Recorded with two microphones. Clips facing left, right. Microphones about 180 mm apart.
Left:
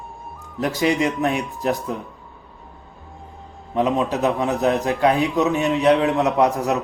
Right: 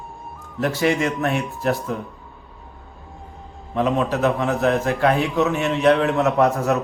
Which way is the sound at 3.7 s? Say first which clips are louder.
Even; 15° left (ahead or behind).